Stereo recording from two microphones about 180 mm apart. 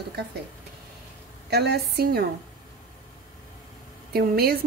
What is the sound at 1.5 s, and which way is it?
Speech, 65° right (ahead or behind).